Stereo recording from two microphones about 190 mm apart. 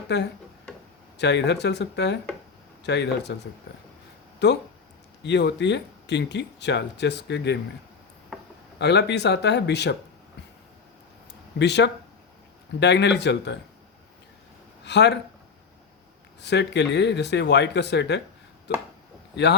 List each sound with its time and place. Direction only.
0.1 s speech: 65° left (ahead or behind)
4.4 s speech: 65° left (ahead or behind)
8.8 s speech: 65° left (ahead or behind)
11.6 s speech: 65° left (ahead or behind)
14.8 s speech: 65° left (ahead or behind)
16.4 s speech: 65° left (ahead or behind)